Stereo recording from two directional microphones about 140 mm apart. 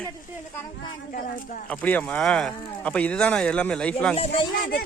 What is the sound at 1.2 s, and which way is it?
Speech, 90° left.